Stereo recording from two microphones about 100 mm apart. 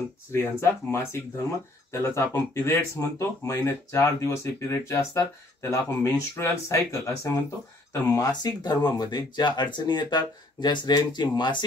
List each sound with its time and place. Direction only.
0.3 s speech: 25° left (ahead or behind); by 11.5 s 45° left (ahead or behind)